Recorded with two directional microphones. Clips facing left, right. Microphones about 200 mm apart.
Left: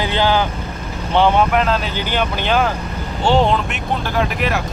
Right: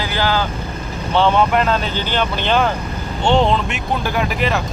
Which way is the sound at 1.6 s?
Centre (ahead or behind).